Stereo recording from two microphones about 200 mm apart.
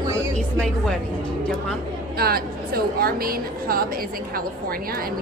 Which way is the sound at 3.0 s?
45° right (ahead or behind).